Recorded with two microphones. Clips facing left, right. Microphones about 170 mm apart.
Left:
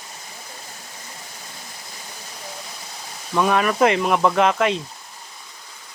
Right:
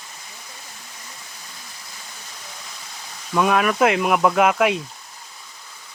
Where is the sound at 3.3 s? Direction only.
5° right (ahead or behind).